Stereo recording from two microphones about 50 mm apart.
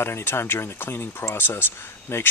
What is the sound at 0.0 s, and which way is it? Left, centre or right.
Speech, left.